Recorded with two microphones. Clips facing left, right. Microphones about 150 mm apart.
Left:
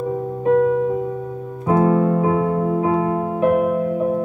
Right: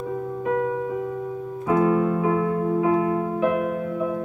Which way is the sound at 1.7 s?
40° left (ahead or behind).